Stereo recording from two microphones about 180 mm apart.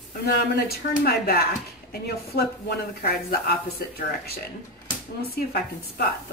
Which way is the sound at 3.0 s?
65° left (ahead or behind).